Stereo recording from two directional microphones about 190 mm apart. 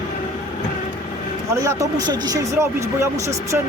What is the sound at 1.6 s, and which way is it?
Speech, 20° right (ahead or behind).